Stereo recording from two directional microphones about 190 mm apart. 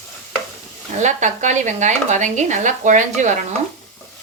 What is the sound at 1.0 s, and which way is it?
Speech, 40° right (ahead or behind).